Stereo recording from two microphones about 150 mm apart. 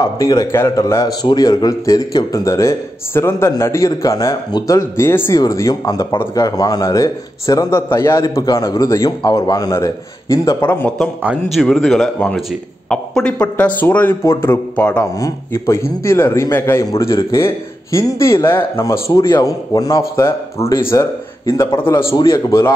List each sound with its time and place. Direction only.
0.0 s a man's voice: 25° left (ahead or behind)
10.6 s a man's voice: 15° left (ahead or behind)
11.5 s a man's voice: centre (ahead or behind)
15.1 s a man's voice: 20° left (ahead or behind)